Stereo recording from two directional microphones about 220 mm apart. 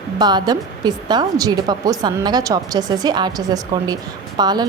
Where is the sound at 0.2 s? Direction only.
20° right (ahead or behind).